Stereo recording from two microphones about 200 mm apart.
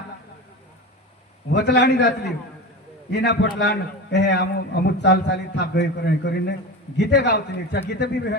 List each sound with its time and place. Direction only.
1.5 s a man's voice: 60° left (ahead or behind)